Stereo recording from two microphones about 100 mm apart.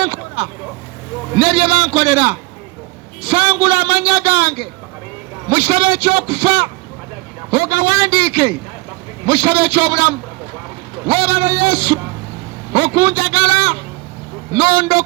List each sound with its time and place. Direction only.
0.0 s a man's voice: 60° right (ahead or behind); by 11.9 s 80° right
12.7 s a man's voice: 65° right (ahead or behind)